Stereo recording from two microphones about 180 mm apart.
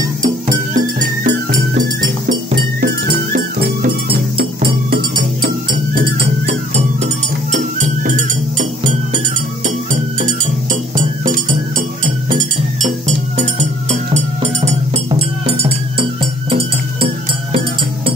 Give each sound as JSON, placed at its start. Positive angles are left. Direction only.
{"t": 0.7, "sound": "music", "side_deg": -50}
{"t": 3.3, "sound": "music", "side_deg": -55}
{"t": 8.5, "sound": "music", "side_deg": -45}
{"t": 11.7, "sound": "music", "side_deg": -50}